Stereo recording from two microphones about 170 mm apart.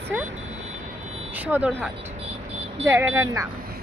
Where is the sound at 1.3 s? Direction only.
10° right (ahead or behind).